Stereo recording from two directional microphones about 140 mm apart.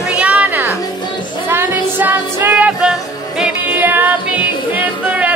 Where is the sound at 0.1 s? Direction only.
10° right (ahead or behind).